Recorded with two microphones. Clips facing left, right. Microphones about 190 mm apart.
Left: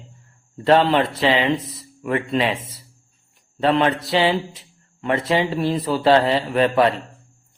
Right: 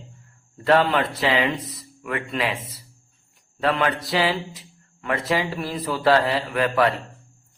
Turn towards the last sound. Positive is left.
turn(degrees=25)  # may be behind; listen again after turning